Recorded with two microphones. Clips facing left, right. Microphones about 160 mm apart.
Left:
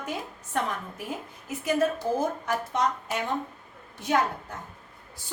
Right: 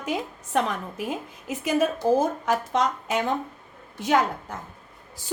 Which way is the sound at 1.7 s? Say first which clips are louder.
Right 4 dB; 90° right.